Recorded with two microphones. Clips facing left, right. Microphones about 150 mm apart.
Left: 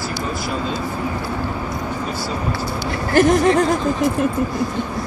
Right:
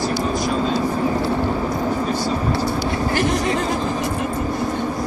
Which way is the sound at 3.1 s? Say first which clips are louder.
Left 9 dB; 45° left (ahead or behind).